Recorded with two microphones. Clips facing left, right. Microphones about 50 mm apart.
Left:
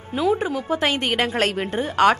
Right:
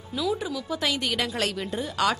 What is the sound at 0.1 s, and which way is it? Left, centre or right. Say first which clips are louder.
A woman's voice: left 7 dB; left.